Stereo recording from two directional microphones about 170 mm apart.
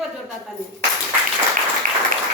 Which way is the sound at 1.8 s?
50° right (ahead or behind).